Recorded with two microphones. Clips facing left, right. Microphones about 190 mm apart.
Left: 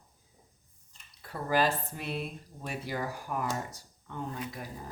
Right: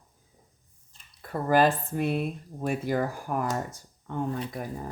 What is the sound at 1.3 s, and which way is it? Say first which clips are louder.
Speech: right 6 dB; 50° right (ahead or behind).